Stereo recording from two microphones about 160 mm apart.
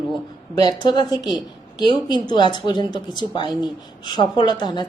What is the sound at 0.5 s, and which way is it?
A woman's voice, 25° left (ahead or behind).